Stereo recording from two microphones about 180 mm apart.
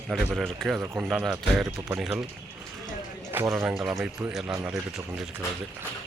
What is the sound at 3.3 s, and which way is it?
Speech, 10° right (ahead or behind).